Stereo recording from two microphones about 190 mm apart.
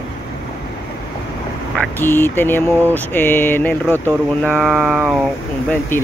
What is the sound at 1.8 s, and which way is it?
Speech, 10° left (ahead or behind).